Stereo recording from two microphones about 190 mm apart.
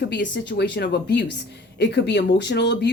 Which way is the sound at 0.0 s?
65° left (ahead or behind).